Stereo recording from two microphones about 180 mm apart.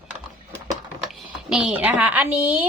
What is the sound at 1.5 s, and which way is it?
A woman's voice, 5° right (ahead or behind).